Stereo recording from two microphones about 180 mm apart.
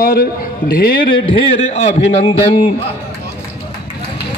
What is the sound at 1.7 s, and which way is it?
Speech, 35° left (ahead or behind).